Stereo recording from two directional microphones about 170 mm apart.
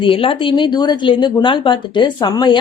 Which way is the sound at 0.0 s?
30° left (ahead or behind).